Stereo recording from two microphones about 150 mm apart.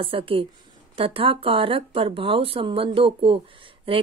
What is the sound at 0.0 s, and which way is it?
A woman's voice, 35° right (ahead or behind).